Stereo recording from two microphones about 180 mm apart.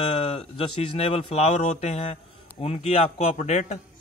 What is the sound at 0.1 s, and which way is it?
A man's voice, 30° left (ahead or behind).